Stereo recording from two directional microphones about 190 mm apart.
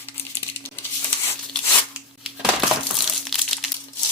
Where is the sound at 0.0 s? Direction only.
10° left (ahead or behind).